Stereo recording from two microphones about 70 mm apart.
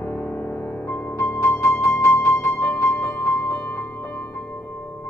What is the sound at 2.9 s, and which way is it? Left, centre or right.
Music, left.